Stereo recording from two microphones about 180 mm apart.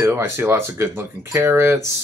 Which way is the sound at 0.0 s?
15° right (ahead or behind).